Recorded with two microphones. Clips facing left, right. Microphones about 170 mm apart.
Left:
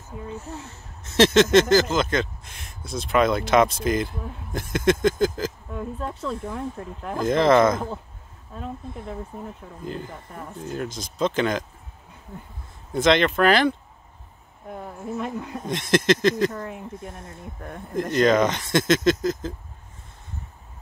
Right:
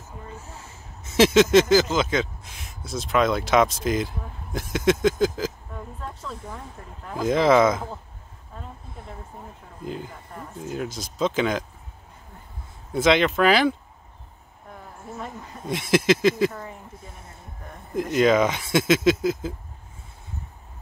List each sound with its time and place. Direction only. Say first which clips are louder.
0.7 s speech: left 1 dB; 5° right (ahead or behind)
5.9 s speech: left 7 dB; 75° left (ahead or behind)
7.2 s speech: even; centre (ahead or behind)
9.8 s speech: even; 5° right (ahead or behind)
12.9 s speech: even; 5° right (ahead or behind)
15.1 s speech: left 7 dB; 80° left
15.6 s speech: right 1 dB; 5° right (ahead or behind)
16.6 s speech: left 6 dB; 65° left (ahead or behind)
17.9 s speech: even; 5° right (ahead or behind)